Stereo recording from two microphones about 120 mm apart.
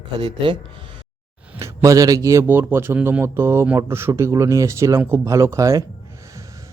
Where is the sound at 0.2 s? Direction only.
45° right (ahead or behind).